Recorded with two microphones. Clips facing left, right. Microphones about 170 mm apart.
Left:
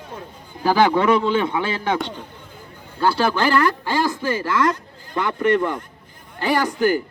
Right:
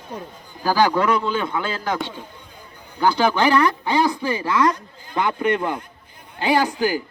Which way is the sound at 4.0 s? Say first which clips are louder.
Right 3 dB; centre (ahead or behind).